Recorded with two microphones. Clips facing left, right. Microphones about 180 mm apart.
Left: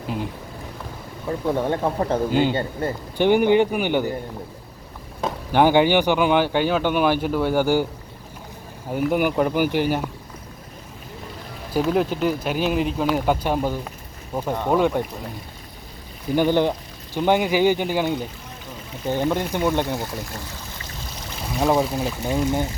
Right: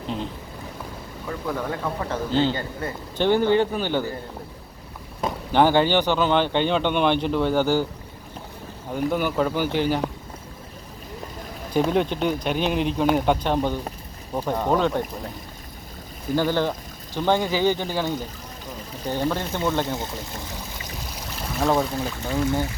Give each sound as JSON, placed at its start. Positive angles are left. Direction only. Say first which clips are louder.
{"t": 1.3, "sound": "speech", "louder": "left 6 dB", "side_deg": 25}
{"t": 2.3, "sound": "speech", "louder": "left 2 dB", "side_deg": 15}
{"t": 5.5, "sound": "speech", "louder": "left 2 dB", "side_deg": 10}
{"t": 8.9, "sound": "speech", "louder": "left 3 dB", "side_deg": 10}
{"t": 11.7, "sound": "speech", "louder": "left 1 dB", "side_deg": 5}
{"t": 16.3, "sound": "speech", "louder": "left 3 dB", "side_deg": 15}
{"t": 21.7, "sound": "speech", "louder": "left 2 dB", "side_deg": 10}